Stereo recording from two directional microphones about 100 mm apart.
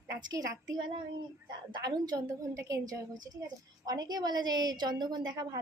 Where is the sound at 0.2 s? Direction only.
45° right (ahead or behind).